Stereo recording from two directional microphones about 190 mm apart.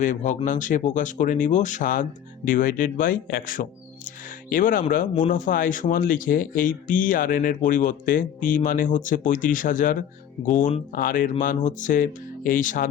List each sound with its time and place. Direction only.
0.0 s speech: 40° left (ahead or behind)